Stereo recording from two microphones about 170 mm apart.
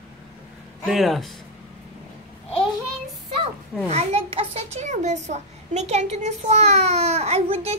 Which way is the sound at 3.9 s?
40° right (ahead or behind).